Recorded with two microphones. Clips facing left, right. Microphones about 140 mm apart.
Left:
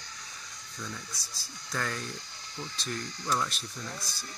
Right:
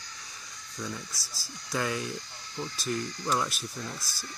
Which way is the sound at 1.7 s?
10° right (ahead or behind).